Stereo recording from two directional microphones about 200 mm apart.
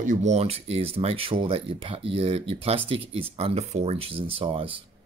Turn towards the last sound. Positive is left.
turn(degrees=-25)  # may be behind; listen again after turning